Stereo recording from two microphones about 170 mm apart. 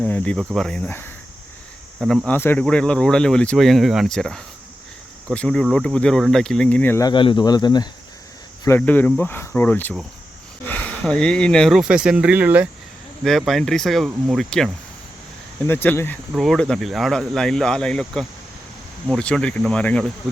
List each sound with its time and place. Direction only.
0.1 s speech: 5° left (ahead or behind)
2.0 s speech: centre (ahead or behind)
7.1 s speech: 30° left (ahead or behind)
8.6 s speech: 10° left (ahead or behind); by 12.6 s 10° right (ahead or behind)
13.2 s speech: centre (ahead or behind)
15.6 s speech: 10° left (ahead or behind)
16.3 s speech: centre (ahead or behind)